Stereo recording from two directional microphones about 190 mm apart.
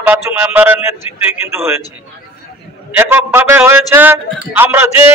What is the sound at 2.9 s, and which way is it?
A man's voice, 10° right (ahead or behind).